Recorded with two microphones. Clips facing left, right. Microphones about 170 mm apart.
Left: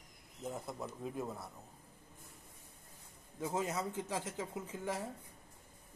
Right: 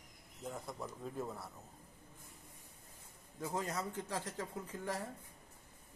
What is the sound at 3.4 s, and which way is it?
Speech, 20° left (ahead or behind).